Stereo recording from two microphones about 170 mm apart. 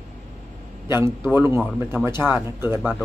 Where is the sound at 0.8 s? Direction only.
15° right (ahead or behind).